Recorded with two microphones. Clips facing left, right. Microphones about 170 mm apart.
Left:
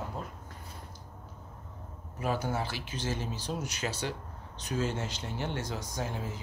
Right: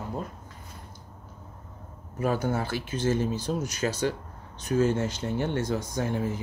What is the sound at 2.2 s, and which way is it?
Speech, 50° right (ahead or behind).